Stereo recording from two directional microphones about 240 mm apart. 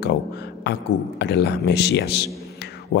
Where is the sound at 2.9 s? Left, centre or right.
Left.